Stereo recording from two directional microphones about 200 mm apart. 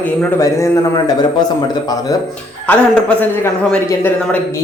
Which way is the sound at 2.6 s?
10° left (ahead or behind).